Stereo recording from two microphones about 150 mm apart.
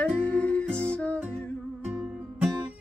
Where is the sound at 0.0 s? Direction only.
10° left (ahead or behind).